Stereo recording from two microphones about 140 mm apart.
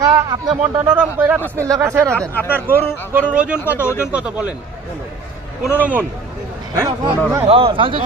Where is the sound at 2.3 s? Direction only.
15° left (ahead or behind).